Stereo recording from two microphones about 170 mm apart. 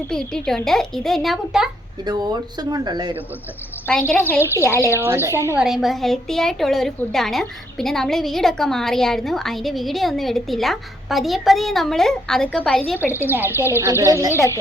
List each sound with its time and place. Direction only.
0.1 s a woman's voice: 5° left (ahead or behind)
2.0 s speech: 25° right (ahead or behind)
3.8 s a woman's voice: 5° left (ahead or behind)
4.9 s speech: 15° right (ahead or behind)
5.5 s a woman's voice: centre (ahead or behind)
13.2 s speech: 10° right (ahead or behind)
13.6 s a woman's voice: 15° left (ahead or behind)
13.8 s speech: 15° right (ahead or behind)
14.3 s a woman's voice: 15° left (ahead or behind)